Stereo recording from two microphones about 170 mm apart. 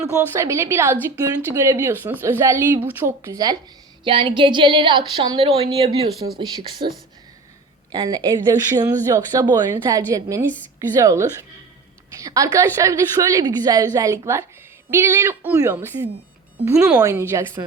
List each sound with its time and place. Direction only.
0.0 s a woman's voice: 15° right (ahead or behind)
7.9 s a woman's voice: 25° right (ahead or behind); by 17.0 s 5° right (ahead or behind)
17.0 s a woman's voice: 15° right (ahead or behind)